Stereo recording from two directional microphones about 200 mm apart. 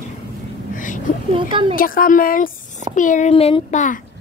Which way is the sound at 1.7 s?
45° left (ahead or behind).